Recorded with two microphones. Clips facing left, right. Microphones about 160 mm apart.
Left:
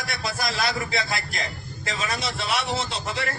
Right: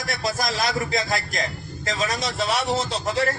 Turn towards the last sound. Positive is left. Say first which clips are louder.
# right 5 dB
turn(degrees=-40)  # may be behind; listen again after turning